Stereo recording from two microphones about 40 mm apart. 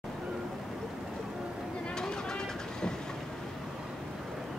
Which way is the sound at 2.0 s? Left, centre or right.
Centre.